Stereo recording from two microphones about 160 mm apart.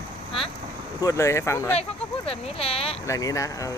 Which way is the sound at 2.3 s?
35° left (ahead or behind).